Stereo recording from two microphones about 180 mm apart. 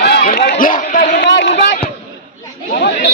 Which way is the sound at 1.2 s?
75° left (ahead or behind).